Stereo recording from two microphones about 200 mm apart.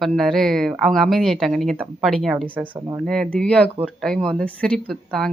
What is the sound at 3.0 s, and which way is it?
Speech, centre (ahead or behind).